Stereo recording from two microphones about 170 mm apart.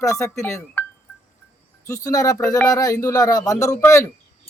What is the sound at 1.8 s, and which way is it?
Speech, 20° left (ahead or behind).